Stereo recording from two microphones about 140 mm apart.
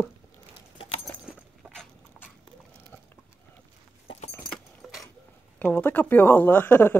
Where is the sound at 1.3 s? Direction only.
Centre (ahead or behind).